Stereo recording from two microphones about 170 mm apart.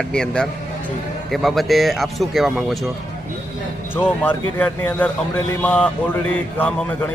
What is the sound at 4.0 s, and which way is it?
A man's voice, 10° left (ahead or behind).